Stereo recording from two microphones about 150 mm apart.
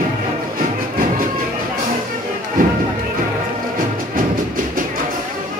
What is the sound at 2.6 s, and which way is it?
Music, 70° right (ahead or behind).